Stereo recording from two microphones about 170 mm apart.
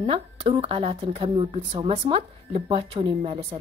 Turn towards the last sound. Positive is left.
turn(degrees=-35)  # may be behind; listen again after turning